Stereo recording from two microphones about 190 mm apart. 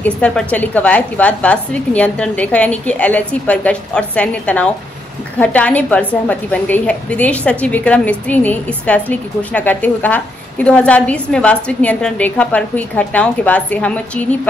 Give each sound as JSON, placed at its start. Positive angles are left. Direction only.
{"t": 0.0, "sound": "a woman's voice", "side_deg": 5}